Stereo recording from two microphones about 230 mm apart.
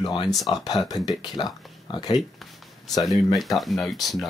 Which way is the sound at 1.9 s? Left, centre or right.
Left.